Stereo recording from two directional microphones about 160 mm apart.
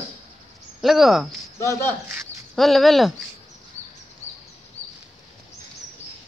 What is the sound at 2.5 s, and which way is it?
Speech, centre (ahead or behind).